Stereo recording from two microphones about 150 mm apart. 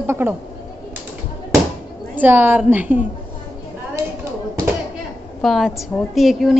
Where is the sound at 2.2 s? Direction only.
10° right (ahead or behind).